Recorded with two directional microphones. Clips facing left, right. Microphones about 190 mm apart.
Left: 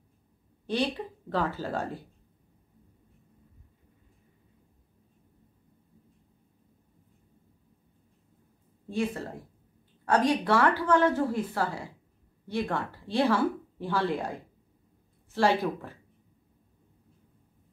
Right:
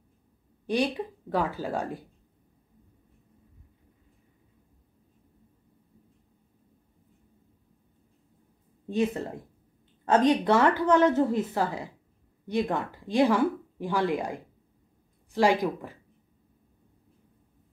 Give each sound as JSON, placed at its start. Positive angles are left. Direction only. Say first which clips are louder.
{"t": 0.7, "sound": "speech", "louder": "right 2 dB", "side_deg": -15}
{"t": 8.8, "sound": "a woman's voice", "louder": "right 4 dB", "side_deg": -20}